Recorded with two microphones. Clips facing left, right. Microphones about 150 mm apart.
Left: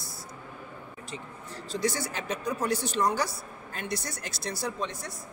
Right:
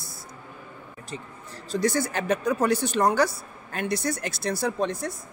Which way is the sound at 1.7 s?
50° right (ahead or behind).